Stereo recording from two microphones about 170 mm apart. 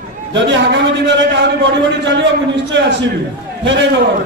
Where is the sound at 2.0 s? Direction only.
90° right.